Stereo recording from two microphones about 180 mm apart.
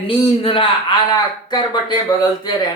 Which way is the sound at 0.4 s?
30° left (ahead or behind).